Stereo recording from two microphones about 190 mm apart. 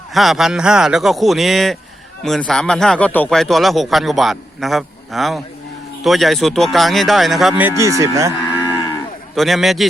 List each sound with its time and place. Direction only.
0.1 s a man's voice: centre (ahead or behind)
7.8 s speech: 15° right (ahead or behind)
9.3 s a man's voice: centre (ahead or behind)